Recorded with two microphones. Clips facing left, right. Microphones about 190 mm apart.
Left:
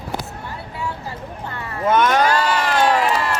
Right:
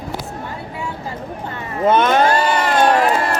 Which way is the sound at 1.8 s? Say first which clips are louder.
Right 2 dB; 25° right (ahead or behind).